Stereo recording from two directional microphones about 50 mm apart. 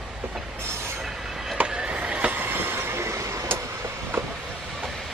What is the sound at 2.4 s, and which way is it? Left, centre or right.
Train, right.